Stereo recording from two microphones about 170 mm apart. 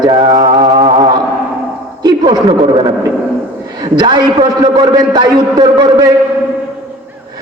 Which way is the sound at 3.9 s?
25° right (ahead or behind).